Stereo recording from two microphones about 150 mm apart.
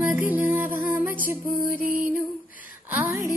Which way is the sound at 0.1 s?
10° right (ahead or behind).